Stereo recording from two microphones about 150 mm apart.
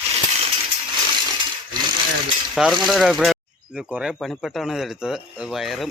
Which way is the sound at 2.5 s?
Centre (ahead or behind).